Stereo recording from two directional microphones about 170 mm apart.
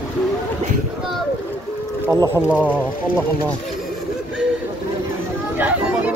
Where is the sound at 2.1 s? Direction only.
20° right (ahead or behind).